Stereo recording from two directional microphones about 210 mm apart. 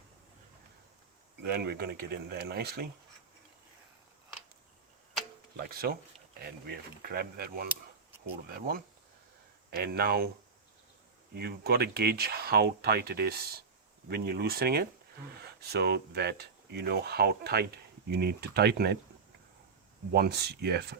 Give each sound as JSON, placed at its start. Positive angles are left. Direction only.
{"t": 1.4, "sound": "speech", "side_deg": -50}
{"t": 5.5, "sound": "speech", "side_deg": -45}
{"t": 11.3, "sound": "speech", "side_deg": -50}
{"t": 20.1, "sound": "speech", "side_deg": -50}